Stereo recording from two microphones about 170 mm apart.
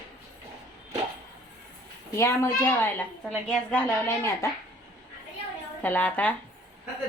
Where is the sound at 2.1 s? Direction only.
15° left (ahead or behind).